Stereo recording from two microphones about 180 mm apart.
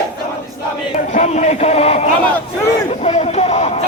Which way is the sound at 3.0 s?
35° left (ahead or behind).